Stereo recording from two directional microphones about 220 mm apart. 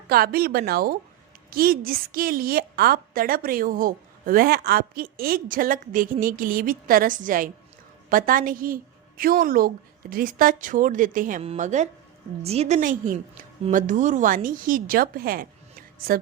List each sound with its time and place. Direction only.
0.1 s a woman's voice: 45° right (ahead or behind)